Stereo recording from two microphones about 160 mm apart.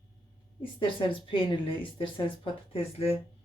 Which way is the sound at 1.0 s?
30° left (ahead or behind).